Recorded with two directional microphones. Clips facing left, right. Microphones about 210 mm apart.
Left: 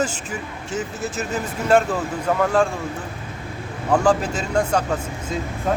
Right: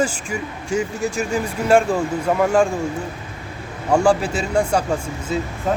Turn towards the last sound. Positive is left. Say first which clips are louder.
# right 2 dB
turn(degrees=-5)  # may be behind; listen again after turning